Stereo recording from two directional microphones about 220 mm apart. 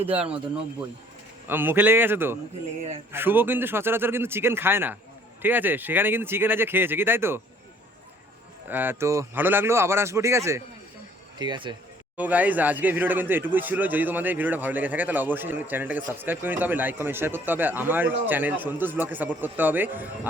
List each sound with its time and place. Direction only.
0.0 s speech: 25° right (ahead or behind)
1.5 s speech: 10° right (ahead or behind)
8.7 s speech: 10° right (ahead or behind)
12.1 s speech: 5° right (ahead or behind)